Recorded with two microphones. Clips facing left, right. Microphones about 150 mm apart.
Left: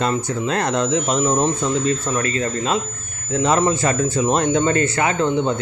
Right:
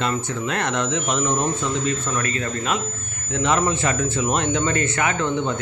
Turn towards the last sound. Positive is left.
turn(degrees=35)  # may be behind; listen again after turning